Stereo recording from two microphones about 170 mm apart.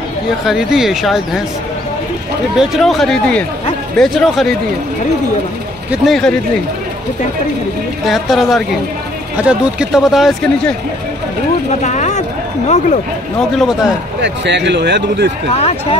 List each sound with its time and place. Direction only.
0.5 s speech: centre (ahead or behind)
2.5 s speech: centre (ahead or behind)
5.9 s speech: centre (ahead or behind)
8.1 s speech: centre (ahead or behind)
11.8 s speech: 45° left (ahead or behind)
14.2 s speech: 90° right
15.5 s speech: 35° left (ahead or behind)